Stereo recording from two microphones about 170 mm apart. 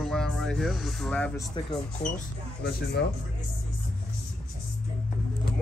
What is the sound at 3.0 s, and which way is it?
Speech, 75° left (ahead or behind).